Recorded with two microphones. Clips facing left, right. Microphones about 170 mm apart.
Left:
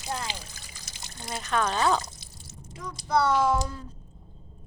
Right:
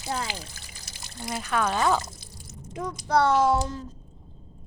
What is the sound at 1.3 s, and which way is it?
Speech, 5° right (ahead or behind).